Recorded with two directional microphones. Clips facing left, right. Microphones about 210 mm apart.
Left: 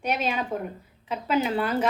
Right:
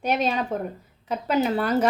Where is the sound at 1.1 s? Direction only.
40° right (ahead or behind).